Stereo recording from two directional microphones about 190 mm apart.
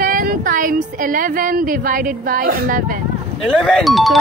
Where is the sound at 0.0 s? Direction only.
45° right (ahead or behind).